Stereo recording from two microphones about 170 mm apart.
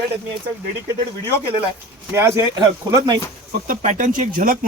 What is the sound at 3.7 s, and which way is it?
Speech, 50° right (ahead or behind).